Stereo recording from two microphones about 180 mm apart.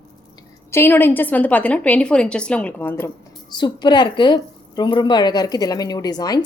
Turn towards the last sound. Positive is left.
turn(degrees=20)  # may be behind; listen again after turning